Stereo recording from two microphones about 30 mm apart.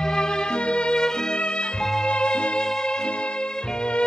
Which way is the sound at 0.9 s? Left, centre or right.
Centre.